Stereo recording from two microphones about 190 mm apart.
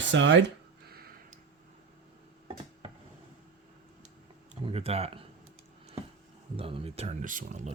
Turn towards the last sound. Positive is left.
turn(degrees=-40)  # may be behind; listen again after turning